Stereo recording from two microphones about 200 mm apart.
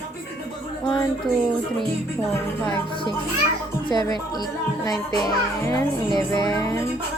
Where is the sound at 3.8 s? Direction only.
20° left (ahead or behind).